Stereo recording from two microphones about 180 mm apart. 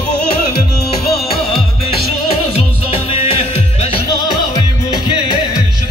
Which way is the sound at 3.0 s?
35° left (ahead or behind).